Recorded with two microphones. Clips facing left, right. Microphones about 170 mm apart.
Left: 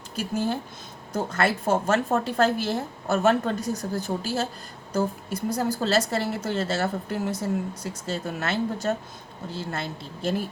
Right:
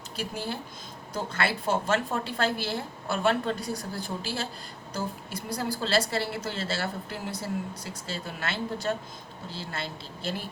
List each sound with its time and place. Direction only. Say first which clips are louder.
0.2 s a woman's voice: left 7 dB; 45° left (ahead or behind)